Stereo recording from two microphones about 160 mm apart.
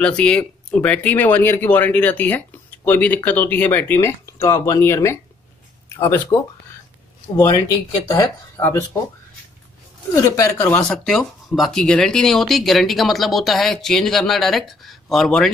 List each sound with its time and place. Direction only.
0.0 s speech: 5° left (ahead or behind)
7.3 s speech: 25° left (ahead or behind)
10.1 s speech: 20° left (ahead or behind)
10.9 s speech: centre (ahead or behind)